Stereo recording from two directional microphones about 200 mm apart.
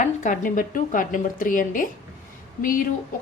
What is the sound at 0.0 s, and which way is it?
A woman's voice, 40° left (ahead or behind).